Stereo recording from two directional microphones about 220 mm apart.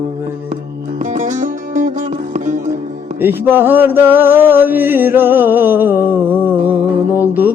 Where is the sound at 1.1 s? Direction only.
35° right (ahead or behind).